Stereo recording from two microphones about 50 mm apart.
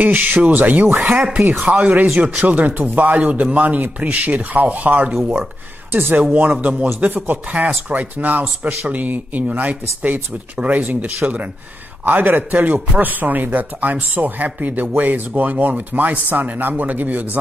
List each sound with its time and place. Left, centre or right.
0.0 s a man's voice: right
2.1 s a man's voice: centre
2.4 s a man's voice: right
5.9 s speech: right
6.3 s a man's voice: right